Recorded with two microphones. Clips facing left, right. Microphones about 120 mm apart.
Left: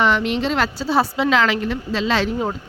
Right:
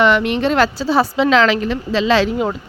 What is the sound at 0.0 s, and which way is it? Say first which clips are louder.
A woman's voice: right 4 dB; 65° right (ahead or behind).